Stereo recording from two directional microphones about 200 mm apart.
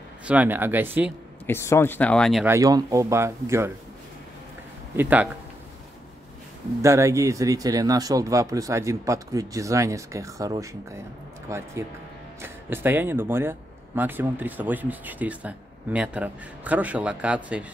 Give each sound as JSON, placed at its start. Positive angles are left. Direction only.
{"t": 0.3, "sound": "speech", "side_deg": -10}
{"t": 1.4, "sound": "speech", "side_deg": 10}
{"t": 2.4, "sound": "speech", "side_deg": -15}
{"t": 4.9, "sound": "speech", "side_deg": -10}
{"t": 6.8, "sound": "speech", "side_deg": -15}